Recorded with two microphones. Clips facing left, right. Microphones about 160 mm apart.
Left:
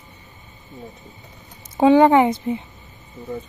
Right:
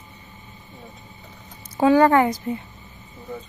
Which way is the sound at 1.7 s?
20° left (ahead or behind).